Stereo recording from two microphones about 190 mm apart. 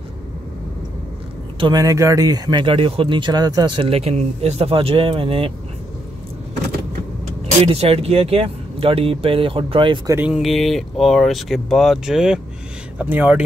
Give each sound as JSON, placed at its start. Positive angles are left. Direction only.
{"t": 1.6, "sound": "speech", "side_deg": -20}
{"t": 7.6, "sound": "speech", "side_deg": -30}
{"t": 10.1, "sound": "speech", "side_deg": -5}